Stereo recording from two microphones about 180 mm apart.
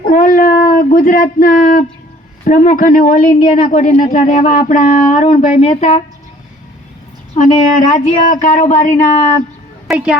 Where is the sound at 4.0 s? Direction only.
50° left (ahead or behind).